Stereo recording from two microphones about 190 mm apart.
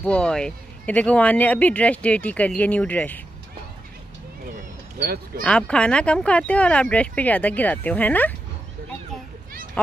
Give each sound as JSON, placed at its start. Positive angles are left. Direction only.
{"t": 0.0, "sound": "speech", "side_deg": 5}
{"t": 4.9, "sound": "speech", "side_deg": -55}
{"t": 5.4, "sound": "speech", "side_deg": 5}